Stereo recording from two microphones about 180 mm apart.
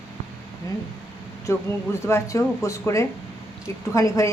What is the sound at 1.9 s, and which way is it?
A woman's voice, 15° left (ahead or behind).